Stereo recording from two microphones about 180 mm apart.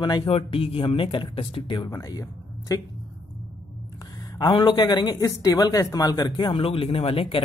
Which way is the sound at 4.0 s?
20° left (ahead or behind).